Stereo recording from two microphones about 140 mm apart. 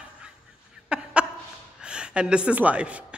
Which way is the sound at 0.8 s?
5° right (ahead or behind).